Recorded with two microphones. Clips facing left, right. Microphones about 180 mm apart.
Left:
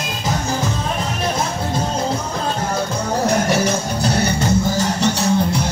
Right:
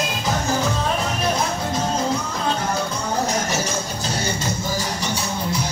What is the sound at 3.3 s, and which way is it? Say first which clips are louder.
Music: left 6 dB; 60° left (ahead or behind).